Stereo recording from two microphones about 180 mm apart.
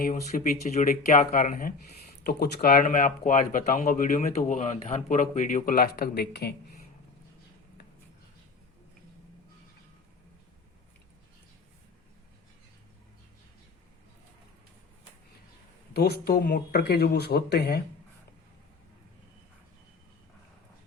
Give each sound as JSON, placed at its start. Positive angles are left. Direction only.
{"t": 0.0, "sound": "speech", "side_deg": 50}
{"t": 15.9, "sound": "speech", "side_deg": 60}